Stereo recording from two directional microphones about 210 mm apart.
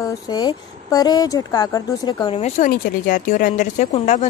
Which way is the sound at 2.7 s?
40° left (ahead or behind).